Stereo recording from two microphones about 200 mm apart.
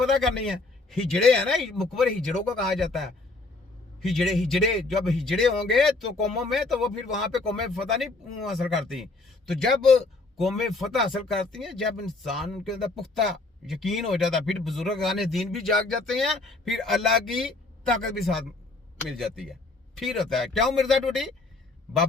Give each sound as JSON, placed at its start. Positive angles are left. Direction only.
{"t": 0.0, "sound": "speech", "side_deg": 0}